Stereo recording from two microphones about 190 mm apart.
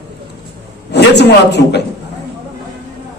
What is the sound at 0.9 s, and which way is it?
Speech, 65° left (ahead or behind).